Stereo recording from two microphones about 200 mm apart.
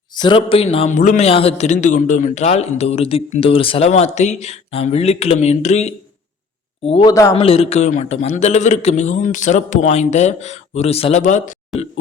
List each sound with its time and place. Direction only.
0.1 s a man's voice: 25° left (ahead or behind)
7.1 s speech: 15° left (ahead or behind)
7.3 s a man's voice: 30° left (ahead or behind)
11.7 s a sound: centre (ahead or behind)